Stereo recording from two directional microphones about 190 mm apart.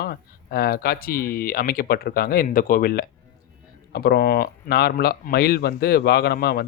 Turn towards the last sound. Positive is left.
turn(degrees=55)  # may be behind; listen again after turning